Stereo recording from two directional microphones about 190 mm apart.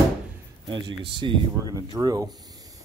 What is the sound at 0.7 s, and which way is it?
Speech, 25° right (ahead or behind).